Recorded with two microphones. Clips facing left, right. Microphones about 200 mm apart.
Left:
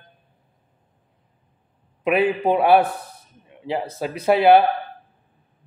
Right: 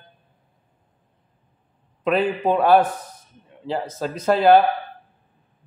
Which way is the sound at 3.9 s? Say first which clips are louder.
Left 2 dB; 15° left (ahead or behind).